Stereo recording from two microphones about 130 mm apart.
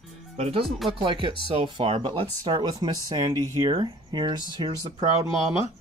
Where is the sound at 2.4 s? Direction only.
30° right (ahead or behind).